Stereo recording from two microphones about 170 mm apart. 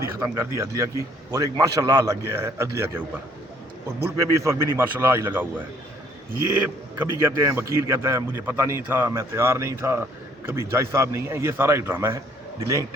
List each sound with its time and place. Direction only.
0.2 s a man's voice: 20° right (ahead or behind)
4.0 s speech: 15° right (ahead or behind)
7.0 s speech: 15° right (ahead or behind)